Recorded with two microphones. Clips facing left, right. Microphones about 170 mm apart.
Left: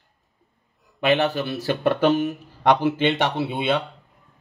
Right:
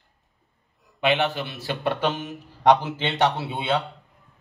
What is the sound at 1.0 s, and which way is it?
Speech, 40° left (ahead or behind).